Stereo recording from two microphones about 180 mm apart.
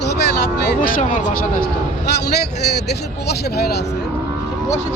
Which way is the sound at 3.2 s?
65° left (ahead or behind).